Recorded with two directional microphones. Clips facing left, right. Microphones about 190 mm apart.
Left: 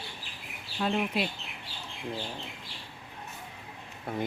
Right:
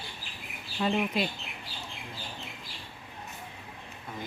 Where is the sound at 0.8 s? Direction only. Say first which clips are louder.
Right 1 dB; centre (ahead or behind).